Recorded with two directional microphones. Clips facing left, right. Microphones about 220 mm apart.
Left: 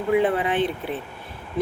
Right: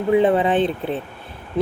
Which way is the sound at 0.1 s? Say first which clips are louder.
Right 5 dB; 25° right (ahead or behind).